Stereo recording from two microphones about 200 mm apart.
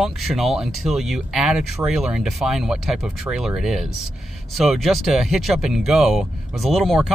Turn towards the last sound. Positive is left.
turn(degrees=0)  # may be behind; listen again after turning